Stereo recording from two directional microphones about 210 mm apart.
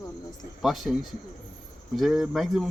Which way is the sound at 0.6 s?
Centre (ahead or behind).